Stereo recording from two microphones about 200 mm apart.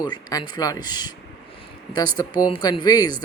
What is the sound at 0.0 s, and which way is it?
A man's voice, 20° left (ahead or behind).